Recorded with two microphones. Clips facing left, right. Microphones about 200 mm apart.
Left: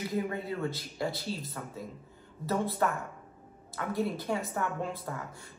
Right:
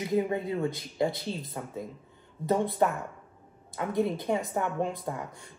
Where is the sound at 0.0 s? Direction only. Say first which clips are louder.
Right 5 dB; 20° right (ahead or behind).